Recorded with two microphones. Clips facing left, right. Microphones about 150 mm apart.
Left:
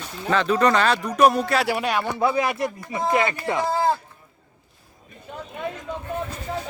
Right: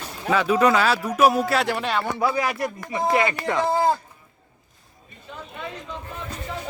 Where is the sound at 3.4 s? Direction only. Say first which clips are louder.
Even; 90° right.